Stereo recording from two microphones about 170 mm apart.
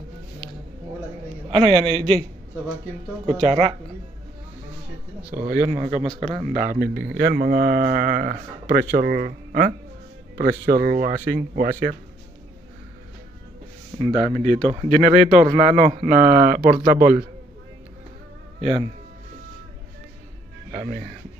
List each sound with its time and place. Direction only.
1.5 s speech: 30° right (ahead or behind)
3.3 s speech: 35° right (ahead or behind)
5.3 s speech: 60° right (ahead or behind)
5.7 s a man's voice: 45° right (ahead or behind)
10.3 s speech: 65° right (ahead or behind)
13.9 s a man's voice: 30° right (ahead or behind); by 17.3 s 60° right (ahead or behind)
20.7 s a man's voice: 50° right (ahead or behind)